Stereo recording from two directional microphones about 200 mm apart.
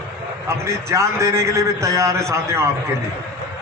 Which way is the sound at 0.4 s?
15° right (ahead or behind).